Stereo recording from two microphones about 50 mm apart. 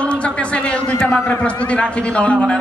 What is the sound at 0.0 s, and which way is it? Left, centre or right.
A man's voice, left.